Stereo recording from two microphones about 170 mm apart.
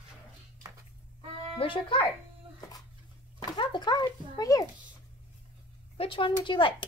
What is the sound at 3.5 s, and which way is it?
Speech, 25° left (ahead or behind).